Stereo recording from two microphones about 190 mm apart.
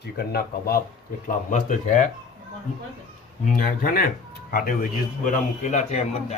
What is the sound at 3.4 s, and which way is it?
A man's voice, 45° left (ahead or behind).